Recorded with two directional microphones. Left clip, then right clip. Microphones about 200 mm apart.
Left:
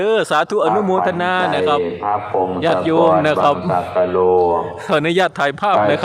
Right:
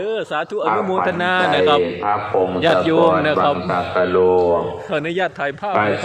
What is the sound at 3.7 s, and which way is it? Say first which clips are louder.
Speech: left 1 dB; 10° right (ahead or behind).